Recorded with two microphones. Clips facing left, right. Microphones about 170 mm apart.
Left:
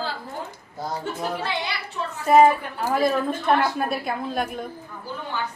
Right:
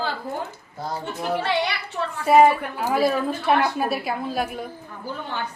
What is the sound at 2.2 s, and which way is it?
A woman's voice, 5° right (ahead or behind).